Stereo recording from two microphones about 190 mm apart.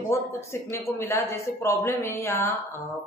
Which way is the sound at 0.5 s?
15° left (ahead or behind).